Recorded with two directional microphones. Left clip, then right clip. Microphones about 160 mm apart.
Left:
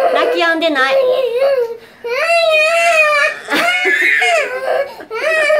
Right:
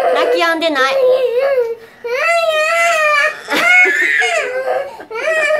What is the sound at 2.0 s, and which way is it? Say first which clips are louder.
Baby cry: left 1 dB; 5° right (ahead or behind).